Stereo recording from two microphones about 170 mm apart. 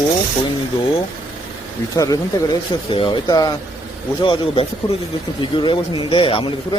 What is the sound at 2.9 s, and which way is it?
Speech, 30° left (ahead or behind).